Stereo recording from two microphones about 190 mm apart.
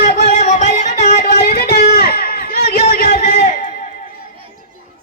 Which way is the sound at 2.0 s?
50° left (ahead or behind).